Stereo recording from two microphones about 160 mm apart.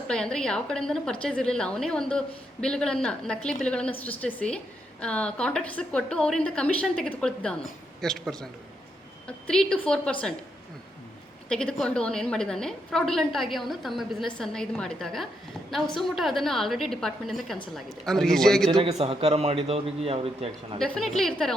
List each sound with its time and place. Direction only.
0.1 s a woman's voice: 5° left (ahead or behind)
11.4 s a woman's voice: 5° left (ahead or behind)
18.7 s a man's voice: 40° right (ahead or behind)
20.7 s a woman's voice: 5° left (ahead or behind)